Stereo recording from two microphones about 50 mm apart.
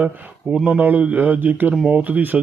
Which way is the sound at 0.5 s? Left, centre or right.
Right.